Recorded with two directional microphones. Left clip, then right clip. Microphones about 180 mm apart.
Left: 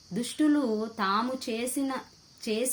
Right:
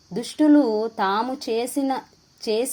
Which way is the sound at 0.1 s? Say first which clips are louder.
Right 8 dB; 20° right (ahead or behind).